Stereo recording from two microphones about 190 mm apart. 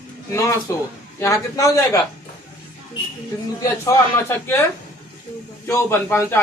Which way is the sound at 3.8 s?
15° left (ahead or behind).